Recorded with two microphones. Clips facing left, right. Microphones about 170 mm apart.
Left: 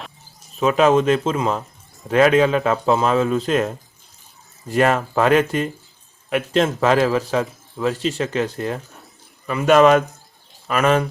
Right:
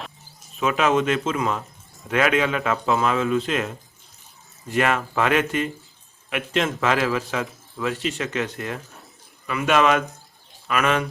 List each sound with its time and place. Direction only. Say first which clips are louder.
0.5 s a man's voice: left 5 dB; 35° left (ahead or behind)